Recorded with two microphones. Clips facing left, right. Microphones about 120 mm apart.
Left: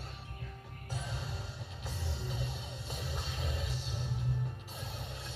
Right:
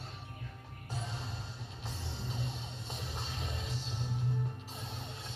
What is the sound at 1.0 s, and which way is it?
Music, 30° right (ahead or behind).